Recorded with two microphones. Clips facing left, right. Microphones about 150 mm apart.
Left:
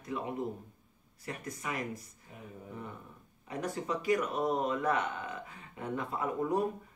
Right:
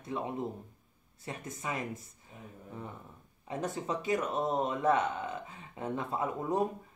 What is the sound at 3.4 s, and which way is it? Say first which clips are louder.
Speech: right 1 dB; 25° right (ahead or behind).